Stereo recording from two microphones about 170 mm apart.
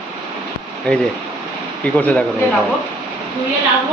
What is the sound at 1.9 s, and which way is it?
Speech, 5° left (ahead or behind).